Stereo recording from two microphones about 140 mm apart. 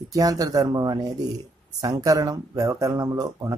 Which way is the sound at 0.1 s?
25° right (ahead or behind).